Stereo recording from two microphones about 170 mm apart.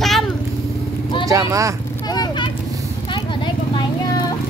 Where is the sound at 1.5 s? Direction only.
20° right (ahead or behind).